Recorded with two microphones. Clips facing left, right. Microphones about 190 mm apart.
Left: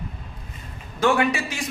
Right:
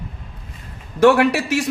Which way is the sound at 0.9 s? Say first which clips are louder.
Right 7 dB; 70° right (ahead or behind).